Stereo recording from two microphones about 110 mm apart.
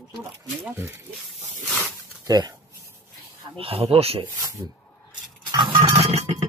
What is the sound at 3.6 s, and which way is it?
Speech, 55° right (ahead or behind).